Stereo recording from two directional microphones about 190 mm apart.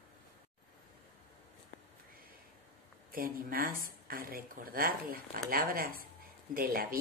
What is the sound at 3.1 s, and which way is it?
Speech, 50° right (ahead or behind).